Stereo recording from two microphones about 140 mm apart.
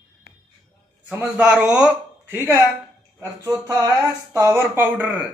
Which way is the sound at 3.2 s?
25° right (ahead or behind).